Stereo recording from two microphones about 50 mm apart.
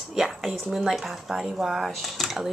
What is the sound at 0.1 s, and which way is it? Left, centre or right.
A woman's voice, centre.